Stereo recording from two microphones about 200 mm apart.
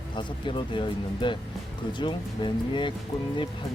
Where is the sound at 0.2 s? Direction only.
25° left (ahead or behind).